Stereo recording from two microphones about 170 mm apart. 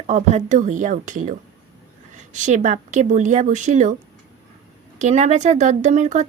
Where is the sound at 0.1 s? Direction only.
45° right (ahead or behind).